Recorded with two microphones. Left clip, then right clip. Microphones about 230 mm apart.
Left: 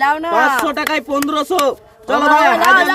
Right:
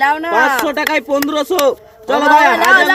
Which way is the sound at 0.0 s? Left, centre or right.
Centre.